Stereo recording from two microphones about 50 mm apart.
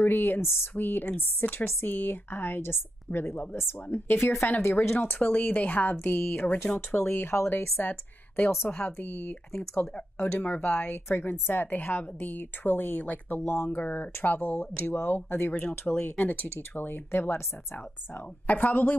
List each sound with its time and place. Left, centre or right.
0.0 s a woman's voice: left
5.2 s speech: left
6.9 s a woman's voice: left
7.8 s a woman's voice: left
13.4 s a woman's voice: left
13.7 s speech: left
16.0 s speech: left